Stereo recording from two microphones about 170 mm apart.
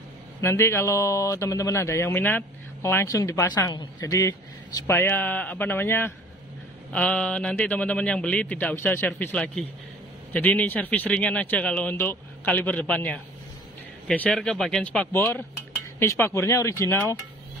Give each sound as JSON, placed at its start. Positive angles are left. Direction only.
{"t": 0.4, "sound": "speech", "side_deg": 15}